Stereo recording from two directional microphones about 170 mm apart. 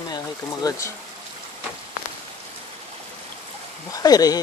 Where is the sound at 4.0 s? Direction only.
20° left (ahead or behind).